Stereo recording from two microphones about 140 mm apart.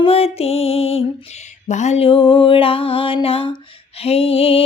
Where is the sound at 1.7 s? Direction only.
55° left (ahead or behind).